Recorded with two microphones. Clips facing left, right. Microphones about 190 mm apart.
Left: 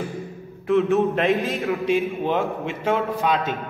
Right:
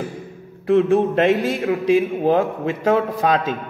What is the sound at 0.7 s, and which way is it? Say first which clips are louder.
A man's voice: right 3 dB; 35° right (ahead or behind).